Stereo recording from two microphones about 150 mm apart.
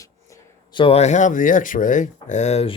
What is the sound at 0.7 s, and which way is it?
Speech, 40° left (ahead or behind).